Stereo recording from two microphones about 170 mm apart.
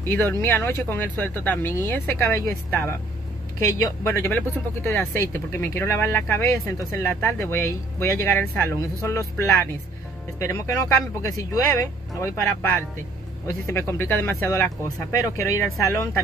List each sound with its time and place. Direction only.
0.0 s speech: 15° left (ahead or behind)
11.3 s speech: 20° left (ahead or behind)